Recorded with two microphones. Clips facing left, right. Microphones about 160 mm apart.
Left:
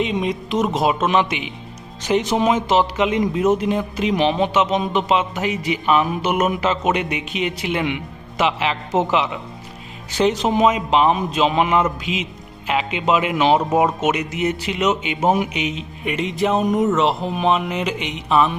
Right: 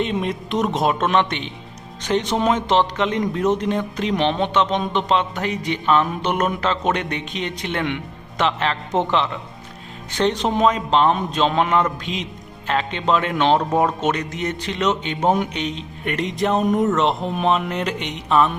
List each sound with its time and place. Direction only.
0.0 s a man's voice: centre (ahead or behind)